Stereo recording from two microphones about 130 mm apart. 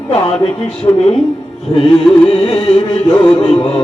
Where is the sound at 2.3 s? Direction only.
45° left (ahead or behind).